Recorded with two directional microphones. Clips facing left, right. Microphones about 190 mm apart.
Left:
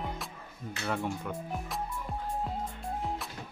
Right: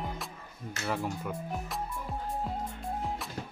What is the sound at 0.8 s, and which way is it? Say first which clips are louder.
Speech: even; 5° right (ahead or behind).